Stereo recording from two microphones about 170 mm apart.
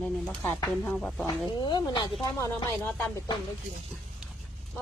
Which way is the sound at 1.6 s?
25° left (ahead or behind).